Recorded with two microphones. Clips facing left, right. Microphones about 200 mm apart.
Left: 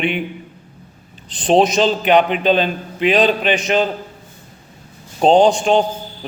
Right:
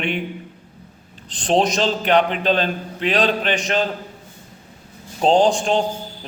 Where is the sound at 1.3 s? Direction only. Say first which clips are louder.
Left 4 dB; 5° left (ahead or behind).